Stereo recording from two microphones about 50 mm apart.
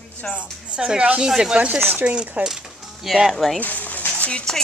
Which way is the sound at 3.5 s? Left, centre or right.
Left.